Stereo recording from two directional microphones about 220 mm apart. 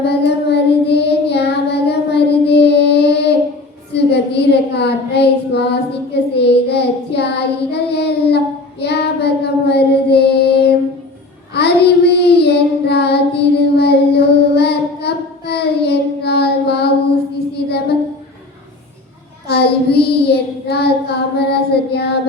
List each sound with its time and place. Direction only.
0.0 s child singing: 50° left (ahead or behind)
3.9 s a child's voice: 50° left (ahead or behind)
8.8 s child singing: 50° left (ahead or behind)
11.5 s child singing: 50° left (ahead or behind)
19.5 s child singing: 50° left (ahead or behind)